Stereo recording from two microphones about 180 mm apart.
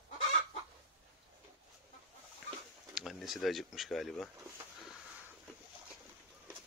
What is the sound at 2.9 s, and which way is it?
Speech, centre (ahead or behind).